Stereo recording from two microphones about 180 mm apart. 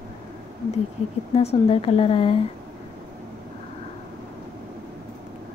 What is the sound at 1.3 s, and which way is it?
A woman's voice, 30° left (ahead or behind).